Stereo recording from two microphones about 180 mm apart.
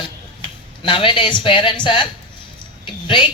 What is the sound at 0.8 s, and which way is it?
A woman's voice, 30° left (ahead or behind).